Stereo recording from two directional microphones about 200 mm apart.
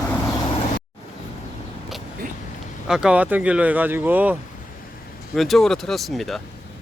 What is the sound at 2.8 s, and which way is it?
Speech, 5° right (ahead or behind).